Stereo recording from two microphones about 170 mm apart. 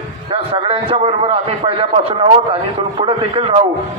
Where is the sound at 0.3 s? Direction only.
35° right (ahead or behind).